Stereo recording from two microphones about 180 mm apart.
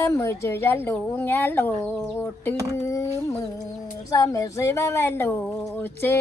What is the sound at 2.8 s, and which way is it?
Speech, 15° left (ahead or behind).